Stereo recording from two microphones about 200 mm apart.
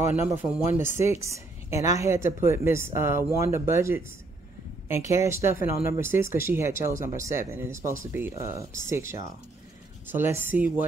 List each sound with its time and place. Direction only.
0.0 s speech: 10° right (ahead or behind)
1.7 s a woman's voice: 35° left (ahead or behind)
2.0 s speech: 15° right (ahead or behind)
5.2 s speech: 15° right (ahead or behind)